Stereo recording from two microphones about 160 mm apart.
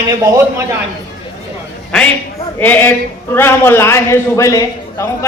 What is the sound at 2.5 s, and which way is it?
A man's voice, 10° left (ahead or behind).